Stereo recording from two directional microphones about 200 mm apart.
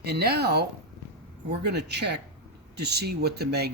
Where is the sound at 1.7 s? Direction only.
55° right (ahead or behind).